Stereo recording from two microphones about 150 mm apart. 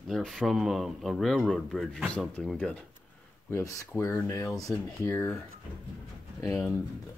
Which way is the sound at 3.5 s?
20° left (ahead or behind).